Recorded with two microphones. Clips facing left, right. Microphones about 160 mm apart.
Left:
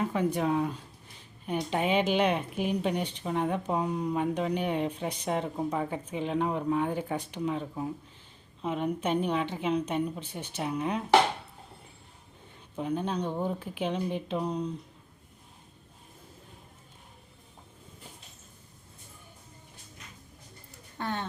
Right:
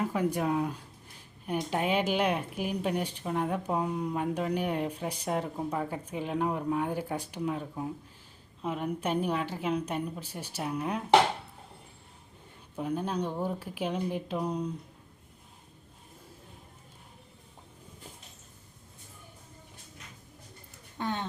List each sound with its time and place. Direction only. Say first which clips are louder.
0.0 s speech: left 1 dB; 5° right (ahead or behind)
12.7 s speech: left 1 dB; 5° right (ahead or behind)
21.0 s speech: even; 20° right (ahead or behind)